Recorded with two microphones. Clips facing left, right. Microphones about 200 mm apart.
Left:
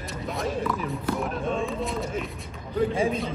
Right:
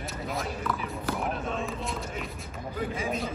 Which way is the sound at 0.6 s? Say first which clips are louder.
Left 4 dB; centre (ahead or behind).